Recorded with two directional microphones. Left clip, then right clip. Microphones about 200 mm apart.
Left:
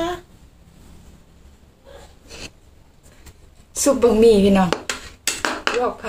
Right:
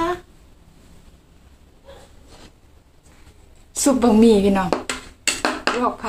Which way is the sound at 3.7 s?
20° right (ahead or behind).